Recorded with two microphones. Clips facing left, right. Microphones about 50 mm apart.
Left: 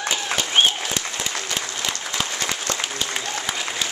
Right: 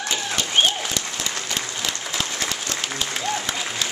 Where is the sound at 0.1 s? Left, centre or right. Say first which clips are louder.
Even; left.